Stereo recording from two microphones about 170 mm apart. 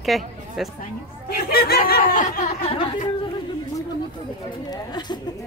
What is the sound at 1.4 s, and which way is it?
Speech, 65° left (ahead or behind).